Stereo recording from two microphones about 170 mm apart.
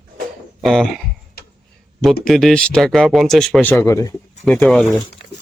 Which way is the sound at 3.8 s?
20° left (ahead or behind).